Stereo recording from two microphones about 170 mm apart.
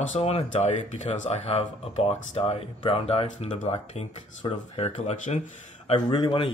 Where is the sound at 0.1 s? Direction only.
35° left (ahead or behind).